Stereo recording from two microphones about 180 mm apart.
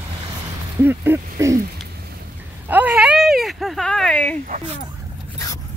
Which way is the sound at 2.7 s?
10° right (ahead or behind).